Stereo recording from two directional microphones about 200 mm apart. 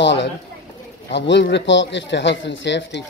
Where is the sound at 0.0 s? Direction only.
60° left (ahead or behind).